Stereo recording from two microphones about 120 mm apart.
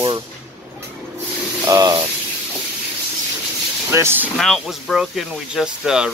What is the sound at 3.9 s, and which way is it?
Speech, 20° right (ahead or behind).